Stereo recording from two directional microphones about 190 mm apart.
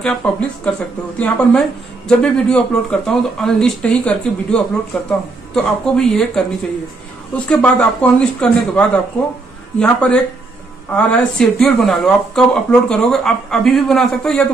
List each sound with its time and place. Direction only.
0.0 s speech: 5° left (ahead or behind)